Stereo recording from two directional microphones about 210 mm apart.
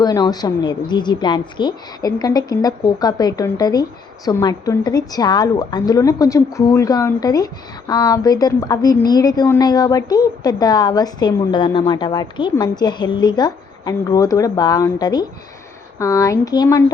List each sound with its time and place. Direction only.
0.0 s a woman's voice: 20° left (ahead or behind)